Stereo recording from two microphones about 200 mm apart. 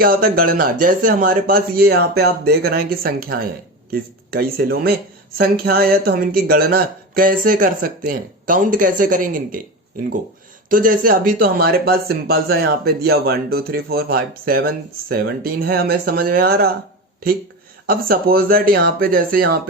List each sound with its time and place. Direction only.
0.0 s speech: 50° right (ahead or behind)
10.7 s speech: 45° right (ahead or behind)
17.8 s speech: 45° right (ahead or behind)